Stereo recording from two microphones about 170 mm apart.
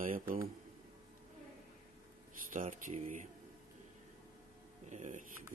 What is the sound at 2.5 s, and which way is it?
Speech, 50° right (ahead or behind).